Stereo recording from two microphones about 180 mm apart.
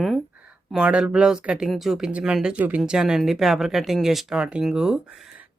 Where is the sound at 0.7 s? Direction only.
5° right (ahead or behind).